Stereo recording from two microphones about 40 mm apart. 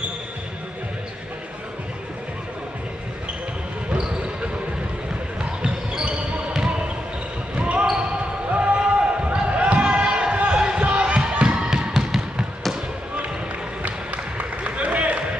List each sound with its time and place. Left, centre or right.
6.5 s basketball bounce: right
7.5 s basketball bounce: right
7.8 s basketball bounce: centre
8.5 s basketball bounce: right
10.3 s a sound: right
10.8 s basketball bounce: right; by 12.1 s centre
13.8 s basketball bounce: right